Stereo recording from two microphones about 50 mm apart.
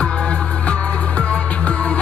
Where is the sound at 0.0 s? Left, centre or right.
Left.